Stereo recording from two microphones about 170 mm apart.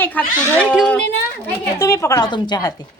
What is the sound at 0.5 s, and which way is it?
Speech, 5° right (ahead or behind).